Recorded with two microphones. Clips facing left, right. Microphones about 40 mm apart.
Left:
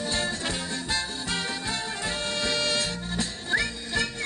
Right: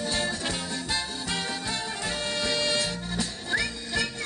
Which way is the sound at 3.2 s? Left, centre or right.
Centre.